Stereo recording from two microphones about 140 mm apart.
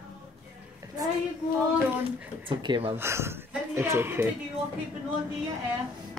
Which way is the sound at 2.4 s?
35° right (ahead or behind).